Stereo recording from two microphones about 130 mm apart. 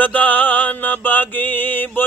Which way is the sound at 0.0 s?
15° left (ahead or behind).